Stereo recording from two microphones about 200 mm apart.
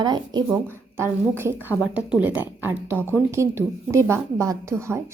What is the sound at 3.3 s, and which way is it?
Speech, 15° right (ahead or behind).